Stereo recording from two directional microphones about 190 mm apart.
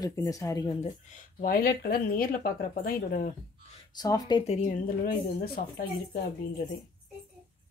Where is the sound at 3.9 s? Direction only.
20° left (ahead or behind).